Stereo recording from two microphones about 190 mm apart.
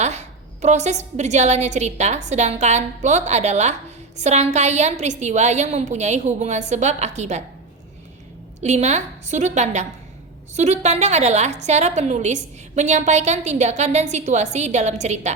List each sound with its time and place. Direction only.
0.0 s a woman's voice: 35° right (ahead or behind)
8.6 s a woman's voice: 35° right (ahead or behind)